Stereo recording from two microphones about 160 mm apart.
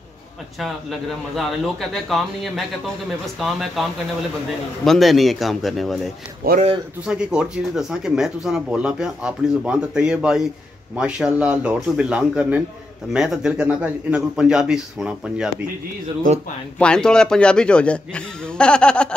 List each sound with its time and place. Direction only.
0.6 s speech: centre (ahead or behind)
4.8 s speech: centre (ahead or behind)
6.4 s speech: 65° right (ahead or behind)
7.1 s speech: 5° right (ahead or behind)
16.3 s speech: 55° right (ahead or behind)
16.7 s a man's voice: 5° left (ahead or behind)